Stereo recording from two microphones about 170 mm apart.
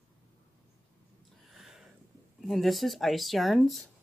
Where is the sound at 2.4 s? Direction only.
Centre (ahead or behind).